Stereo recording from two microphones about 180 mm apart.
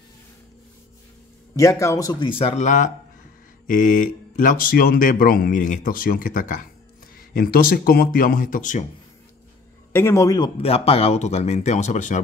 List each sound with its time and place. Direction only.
1.6 s speech: 15° left (ahead or behind); by 8.8 s 45° left (ahead or behind)
9.9 s a man's voice: 15° left (ahead or behind)
10.6 s speech: 35° left (ahead or behind)